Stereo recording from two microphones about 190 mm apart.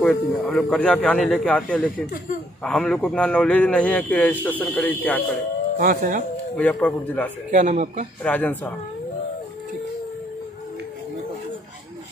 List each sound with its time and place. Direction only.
0.0 s a man's voice: 5° left (ahead or behind)
5.8 s speech: 45° right (ahead or behind)
6.5 s speech: 5° left (ahead or behind)
7.5 s speech: 40° right (ahead or behind)
8.2 s speech: 10° left (ahead or behind)